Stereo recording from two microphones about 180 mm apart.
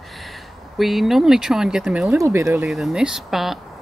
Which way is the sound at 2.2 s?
15° right (ahead or behind).